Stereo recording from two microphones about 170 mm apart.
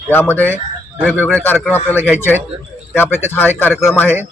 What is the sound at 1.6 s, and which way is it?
Speech, 10° left (ahead or behind).